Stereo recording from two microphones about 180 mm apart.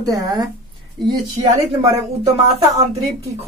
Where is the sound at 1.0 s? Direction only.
Centre (ahead or behind).